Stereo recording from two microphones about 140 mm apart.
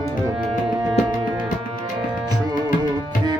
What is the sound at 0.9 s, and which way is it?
Music, 5° right (ahead or behind).